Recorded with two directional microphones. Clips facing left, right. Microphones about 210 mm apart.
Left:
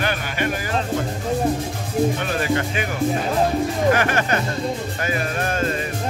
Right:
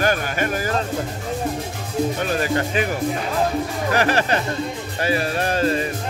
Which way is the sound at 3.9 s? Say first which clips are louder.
Right 1 dB; 35° right (ahead or behind).